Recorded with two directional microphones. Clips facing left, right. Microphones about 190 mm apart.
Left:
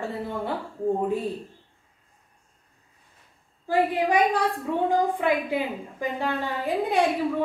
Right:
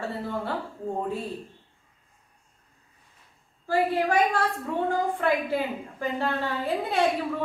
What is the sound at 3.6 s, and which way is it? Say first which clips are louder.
A woman's voice: left 1 dB; 15° left (ahead or behind).